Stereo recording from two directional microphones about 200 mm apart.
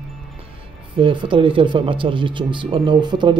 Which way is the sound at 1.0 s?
25° right (ahead or behind).